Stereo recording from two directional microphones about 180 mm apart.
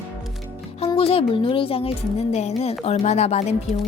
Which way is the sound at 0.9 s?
30° left (ahead or behind).